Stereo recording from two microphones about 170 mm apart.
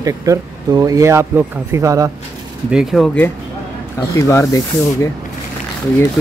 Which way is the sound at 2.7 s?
Centre (ahead or behind).